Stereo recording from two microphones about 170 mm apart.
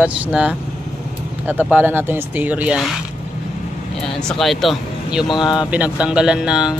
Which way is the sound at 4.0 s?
5° left (ahead or behind).